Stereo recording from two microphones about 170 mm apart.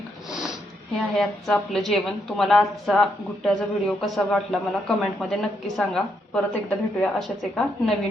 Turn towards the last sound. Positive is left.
turn(degrees=0)  # may be behind; listen again after turning